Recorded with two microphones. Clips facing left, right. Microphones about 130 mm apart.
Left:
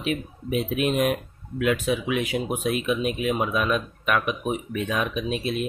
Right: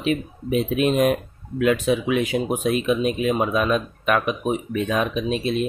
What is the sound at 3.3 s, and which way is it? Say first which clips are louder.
Speech: right 3 dB; 35° right (ahead or behind).